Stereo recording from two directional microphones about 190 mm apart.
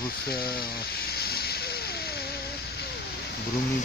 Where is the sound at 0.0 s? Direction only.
55° left (ahead or behind).